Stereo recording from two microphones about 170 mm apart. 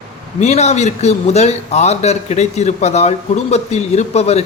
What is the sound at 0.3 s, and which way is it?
Speech, 40° left (ahead or behind).